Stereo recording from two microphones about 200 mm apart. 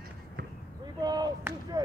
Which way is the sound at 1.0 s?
20° right (ahead or behind).